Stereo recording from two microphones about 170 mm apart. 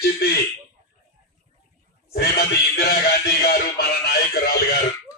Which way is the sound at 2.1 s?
65° left (ahead or behind).